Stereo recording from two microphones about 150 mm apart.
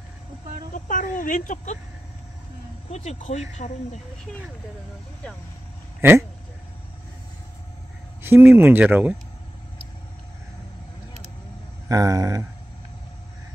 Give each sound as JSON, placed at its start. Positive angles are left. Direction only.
{"t": 0.7, "sound": "speech", "side_deg": 60}
{"t": 2.9, "sound": "speech", "side_deg": 45}
{"t": 5.9, "sound": "speech", "side_deg": -15}
{"t": 8.2, "sound": "speech", "side_deg": -15}
{"t": 11.9, "sound": "speech", "side_deg": -25}